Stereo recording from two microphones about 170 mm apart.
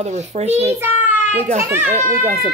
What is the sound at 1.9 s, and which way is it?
Speech, 40° right (ahead or behind).